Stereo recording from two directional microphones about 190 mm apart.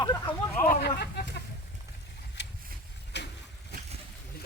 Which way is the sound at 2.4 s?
65° left (ahead or behind).